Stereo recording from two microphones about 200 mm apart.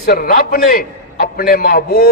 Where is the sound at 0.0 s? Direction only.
45° left (ahead or behind).